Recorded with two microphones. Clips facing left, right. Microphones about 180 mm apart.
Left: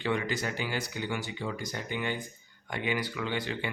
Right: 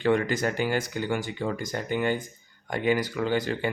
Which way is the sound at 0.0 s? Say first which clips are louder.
Right 7 dB; 50° right (ahead or behind).